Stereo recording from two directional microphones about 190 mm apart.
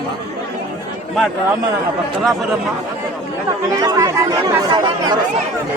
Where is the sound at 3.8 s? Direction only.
20° right (ahead or behind).